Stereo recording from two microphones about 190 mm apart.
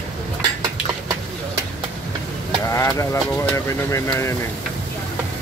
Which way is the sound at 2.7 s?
15° left (ahead or behind).